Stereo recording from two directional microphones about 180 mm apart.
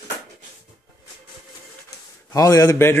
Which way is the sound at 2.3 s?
20° left (ahead or behind).